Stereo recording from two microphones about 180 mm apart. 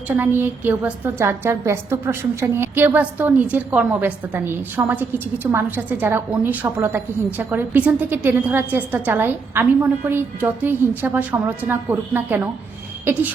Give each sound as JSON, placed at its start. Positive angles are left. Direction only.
{"t": 0.2, "sound": "a woman's voice", "side_deg": -10}